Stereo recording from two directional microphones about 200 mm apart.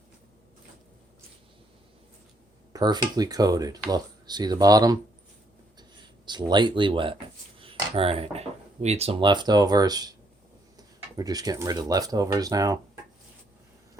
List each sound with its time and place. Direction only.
2.7 s speech: 20° right (ahead or behind)
6.5 s speech: 25° right (ahead or behind)